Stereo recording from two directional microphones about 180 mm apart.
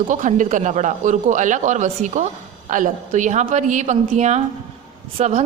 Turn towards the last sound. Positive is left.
turn(degrees=-35)  # may be behind; listen again after turning